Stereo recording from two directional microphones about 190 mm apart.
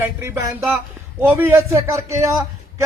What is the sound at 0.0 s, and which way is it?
A man's voice, 15° right (ahead or behind).